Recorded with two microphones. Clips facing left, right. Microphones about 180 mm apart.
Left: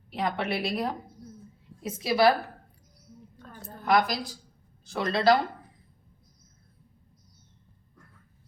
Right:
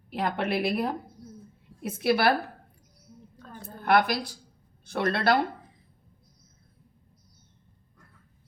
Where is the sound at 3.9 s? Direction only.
60° right (ahead or behind).